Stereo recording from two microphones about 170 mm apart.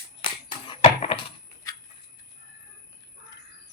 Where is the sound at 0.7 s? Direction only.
30° left (ahead or behind).